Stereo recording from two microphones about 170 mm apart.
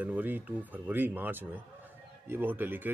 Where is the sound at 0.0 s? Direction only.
10° right (ahead or behind).